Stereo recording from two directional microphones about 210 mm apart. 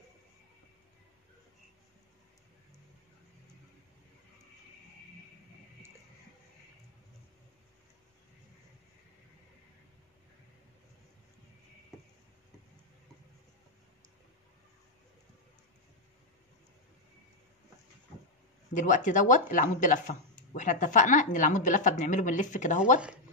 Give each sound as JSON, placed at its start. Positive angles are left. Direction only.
{"t": 18.7, "sound": "speech", "side_deg": 35}